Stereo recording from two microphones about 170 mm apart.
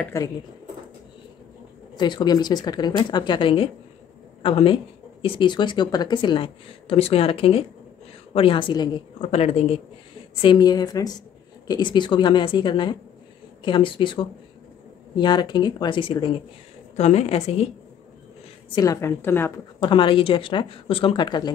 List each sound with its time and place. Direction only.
0.0 s a woman's voice: 15° left (ahead or behind)
2.0 s a woman's voice: 25° left (ahead or behind)
9.2 s a woman's voice: 40° left (ahead or behind)
10.4 s a woman's voice: 25° left (ahead or behind)
16.9 s a woman's voice: 40° left (ahead or behind)
18.8 s a woman's voice: 20° left (ahead or behind)
19.8 s a woman's voice: 30° left (ahead or behind)